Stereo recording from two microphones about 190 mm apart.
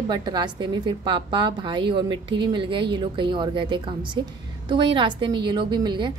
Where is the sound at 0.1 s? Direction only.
25° right (ahead or behind).